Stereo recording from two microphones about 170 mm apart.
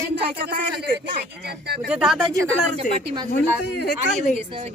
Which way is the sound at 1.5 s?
70° right (ahead or behind).